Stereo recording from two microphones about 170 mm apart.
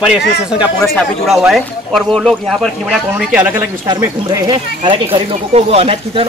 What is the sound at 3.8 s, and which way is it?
Speech, 20° right (ahead or behind).